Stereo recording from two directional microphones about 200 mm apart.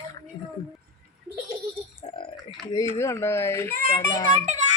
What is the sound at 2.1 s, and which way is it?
Typing, 30° left (ahead or behind).